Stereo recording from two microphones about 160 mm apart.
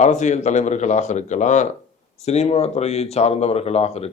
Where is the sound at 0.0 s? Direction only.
45° left (ahead or behind).